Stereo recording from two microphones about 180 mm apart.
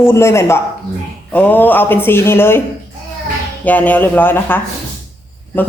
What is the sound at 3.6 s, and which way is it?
Speech, 10° left (ahead or behind).